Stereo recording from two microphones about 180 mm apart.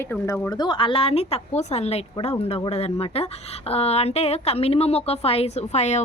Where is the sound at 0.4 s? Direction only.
25° left (ahead or behind).